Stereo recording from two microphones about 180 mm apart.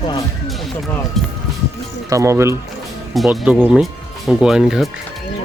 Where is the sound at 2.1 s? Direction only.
15° right (ahead or behind).